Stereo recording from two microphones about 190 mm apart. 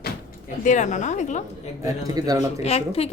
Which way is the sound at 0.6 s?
40° left (ahead or behind).